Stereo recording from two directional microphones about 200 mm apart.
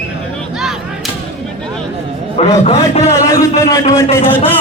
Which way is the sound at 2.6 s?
35° left (ahead or behind).